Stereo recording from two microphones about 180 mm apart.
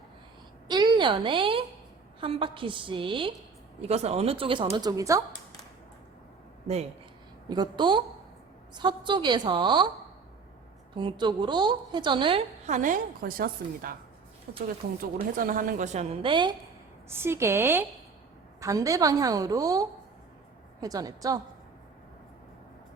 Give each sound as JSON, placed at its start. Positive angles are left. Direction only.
{"t": 0.7, "sound": "a woman's voice", "side_deg": -25}
{"t": 7.4, "sound": "a woman's voice", "side_deg": -25}
{"t": 10.9, "sound": "a woman's voice", "side_deg": -25}
{"t": 12.6, "sound": "a woman's voice", "side_deg": -45}
{"t": 15.4, "sound": "a woman's voice", "side_deg": -50}
{"t": 16.2, "sound": "a woman's voice", "side_deg": -25}
{"t": 17.1, "sound": "a woman's voice", "side_deg": -15}